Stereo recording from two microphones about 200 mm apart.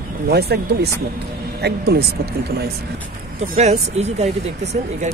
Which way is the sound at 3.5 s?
35° right (ahead or behind).